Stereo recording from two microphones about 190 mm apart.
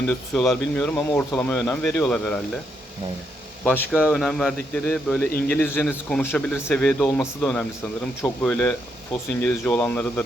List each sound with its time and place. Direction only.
0.3 s speech: 5° left (ahead or behind)
3.6 s speech: 10° left (ahead or behind)